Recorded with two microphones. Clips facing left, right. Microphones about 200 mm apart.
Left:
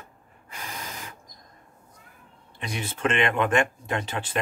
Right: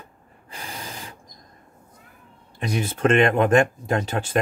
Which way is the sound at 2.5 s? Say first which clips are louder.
Right 7 dB; 40° right (ahead or behind).